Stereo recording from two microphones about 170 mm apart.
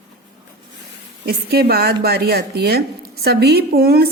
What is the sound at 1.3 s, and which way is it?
A woman's voice, 65° right (ahead or behind).